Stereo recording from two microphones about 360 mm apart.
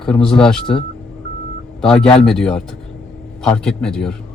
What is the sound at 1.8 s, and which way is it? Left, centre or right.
A man's voice, centre.